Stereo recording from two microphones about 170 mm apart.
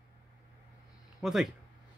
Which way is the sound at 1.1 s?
Centre (ahead or behind).